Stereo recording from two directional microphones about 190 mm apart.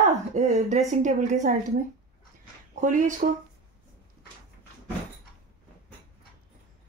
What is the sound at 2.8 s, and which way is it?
Speech, 40° right (ahead or behind).